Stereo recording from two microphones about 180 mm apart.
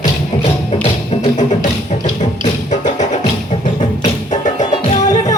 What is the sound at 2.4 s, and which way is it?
Music, 40° left (ahead or behind).